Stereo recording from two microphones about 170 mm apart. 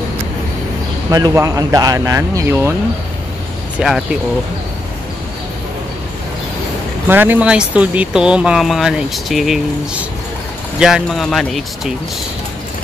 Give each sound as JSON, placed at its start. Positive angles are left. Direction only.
{"t": 1.1, "sound": "speech", "side_deg": -20}
{"t": 3.8, "sound": "speech", "side_deg": 0}
{"t": 7.1, "sound": "speech", "side_deg": -10}